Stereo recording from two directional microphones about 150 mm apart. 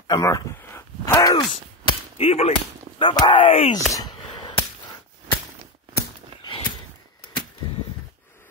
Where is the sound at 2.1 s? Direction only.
40° left (ahead or behind).